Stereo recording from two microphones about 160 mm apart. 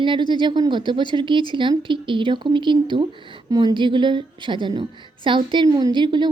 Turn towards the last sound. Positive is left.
turn(degrees=-30)  # may be behind; listen again after turning